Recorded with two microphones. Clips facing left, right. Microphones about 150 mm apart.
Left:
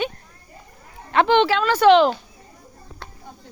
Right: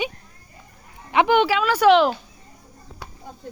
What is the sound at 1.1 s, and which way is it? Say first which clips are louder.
A woman's voice: left 1 dB; 10° right (ahead or behind).